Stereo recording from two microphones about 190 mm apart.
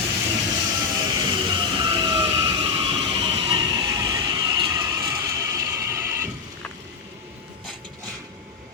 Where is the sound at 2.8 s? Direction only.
25° right (ahead or behind).